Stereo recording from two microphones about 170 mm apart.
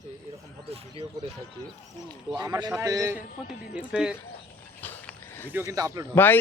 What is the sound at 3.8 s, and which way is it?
Speech, 5° right (ahead or behind).